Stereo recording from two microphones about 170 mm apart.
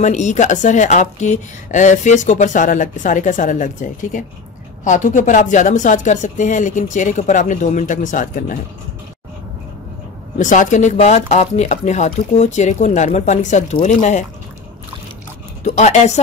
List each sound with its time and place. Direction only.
0.0 s speech: 45° left (ahead or behind)
10.4 s speech: 50° left (ahead or behind)
15.6 s speech: 45° left (ahead or behind)